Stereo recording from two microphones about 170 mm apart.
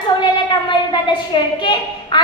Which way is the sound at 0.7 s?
25° left (ahead or behind).